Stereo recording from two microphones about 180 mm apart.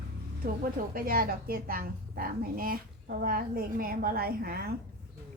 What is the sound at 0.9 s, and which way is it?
A woman's voice, 55° right (ahead or behind).